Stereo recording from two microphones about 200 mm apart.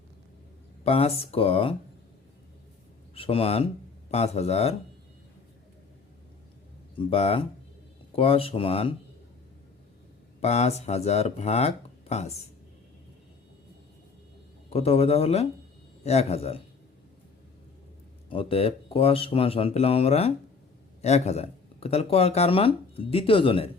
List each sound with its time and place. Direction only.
0.9 s speech: 30° left (ahead or behind)
3.2 s speech: 30° left (ahead or behind)
6.9 s speech: 25° left (ahead or behind)
10.4 s speech: 30° left (ahead or behind)
14.7 s speech: 30° left (ahead or behind)
18.3 s speech: 30° left (ahead or behind)